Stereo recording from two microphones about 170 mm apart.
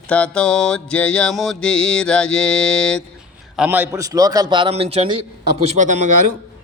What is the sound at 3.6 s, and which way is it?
A man's voice, 15° right (ahead or behind).